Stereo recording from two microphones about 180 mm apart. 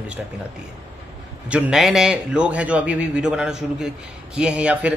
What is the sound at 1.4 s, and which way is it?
Speech, 5° right (ahead or behind).